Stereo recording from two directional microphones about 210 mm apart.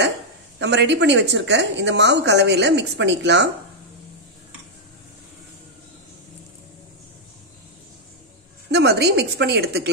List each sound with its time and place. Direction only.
0.6 s a woman's voice: 55° right (ahead or behind)
8.7 s a woman's voice: 50° right (ahead or behind)